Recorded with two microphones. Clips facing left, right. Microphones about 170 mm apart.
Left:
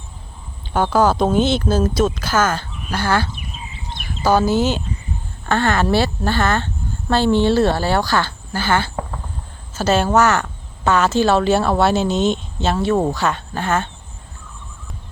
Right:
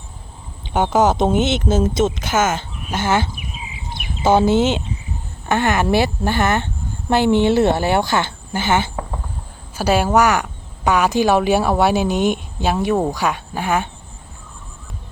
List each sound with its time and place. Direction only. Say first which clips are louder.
0.7 s speech: even; 20° right (ahead or behind)
3.5 s bird: right 1 dB; 5° right (ahead or behind)
4.2 s speech: right 2 dB; 25° right (ahead or behind)